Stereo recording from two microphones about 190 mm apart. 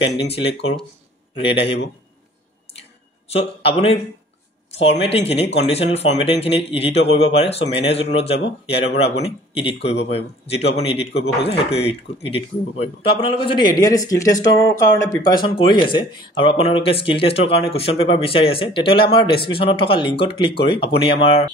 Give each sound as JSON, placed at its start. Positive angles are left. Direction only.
{"t": 0.0, "sound": "speech", "side_deg": 30}
{"t": 5.6, "sound": "speech", "side_deg": 35}